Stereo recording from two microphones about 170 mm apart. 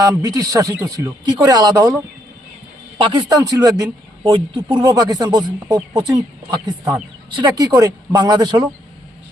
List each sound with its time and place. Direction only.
0.0 s a man's voice: 20° right (ahead or behind)
3.0 s a man's voice: 25° right (ahead or behind)
7.3 s a man's voice: 25° right (ahead or behind)